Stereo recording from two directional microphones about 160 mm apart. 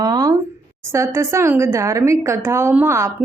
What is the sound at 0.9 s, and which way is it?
Speech, 15° right (ahead or behind).